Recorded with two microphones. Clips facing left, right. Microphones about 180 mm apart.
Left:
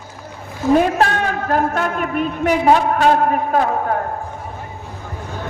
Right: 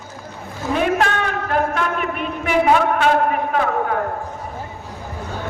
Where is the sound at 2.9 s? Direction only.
40° left (ahead or behind).